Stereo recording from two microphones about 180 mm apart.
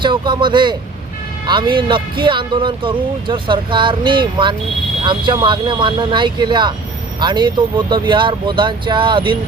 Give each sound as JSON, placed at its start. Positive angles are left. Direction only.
{"t": 0.0, "sound": "speech", "side_deg": -25}